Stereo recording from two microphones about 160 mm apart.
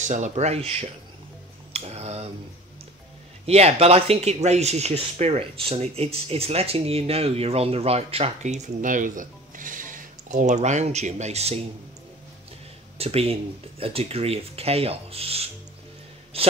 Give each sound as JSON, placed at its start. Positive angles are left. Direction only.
{"t": 0.0, "sound": "speech", "side_deg": -50}
{"t": 1.7, "sound": "tick-tock", "side_deg": -40}
{"t": 3.4, "sound": "speech", "side_deg": -40}
{"t": 12.9, "sound": "speech", "side_deg": -40}